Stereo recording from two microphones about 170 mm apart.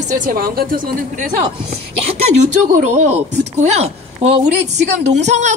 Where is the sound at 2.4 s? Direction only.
45° right (ahead or behind).